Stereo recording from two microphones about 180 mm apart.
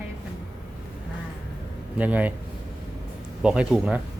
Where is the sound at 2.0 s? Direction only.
10° right (ahead or behind).